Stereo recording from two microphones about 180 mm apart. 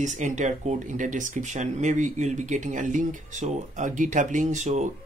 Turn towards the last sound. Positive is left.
turn(degrees=-40)  # may be behind; listen again after turning